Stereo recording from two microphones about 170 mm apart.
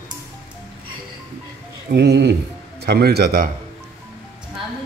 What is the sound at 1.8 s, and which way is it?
Speech, 80° right.